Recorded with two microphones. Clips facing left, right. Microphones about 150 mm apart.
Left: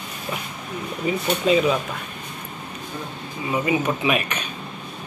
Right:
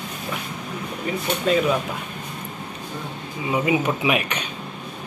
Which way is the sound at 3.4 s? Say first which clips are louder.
Right 1 dB; 15° right (ahead or behind).